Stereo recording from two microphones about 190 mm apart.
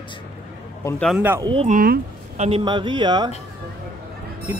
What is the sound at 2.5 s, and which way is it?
Speech, 25° right (ahead or behind).